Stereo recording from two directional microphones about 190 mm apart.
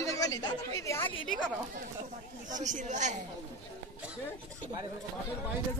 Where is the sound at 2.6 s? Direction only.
40° right (ahead or behind).